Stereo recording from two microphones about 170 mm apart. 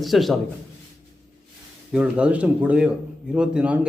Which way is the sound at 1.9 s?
5° right (ahead or behind).